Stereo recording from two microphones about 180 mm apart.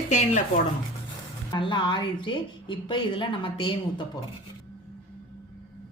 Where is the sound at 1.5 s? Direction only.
25° left (ahead or behind).